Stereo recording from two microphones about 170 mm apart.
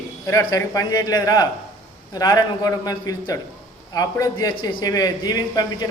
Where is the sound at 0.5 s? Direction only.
20° left (ahead or behind).